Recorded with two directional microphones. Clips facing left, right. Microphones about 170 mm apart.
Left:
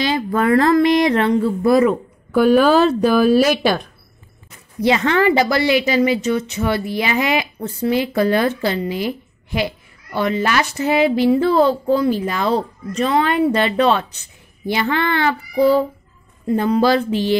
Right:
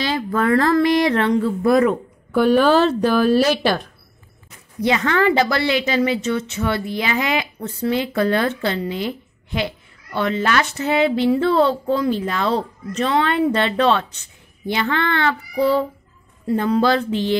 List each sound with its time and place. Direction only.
0.0 s speech: 15° left (ahead or behind)
1.4 s speech: 5° left (ahead or behind)
4.8 s speech: 20° left (ahead or behind)
16.4 s speech: 15° left (ahead or behind)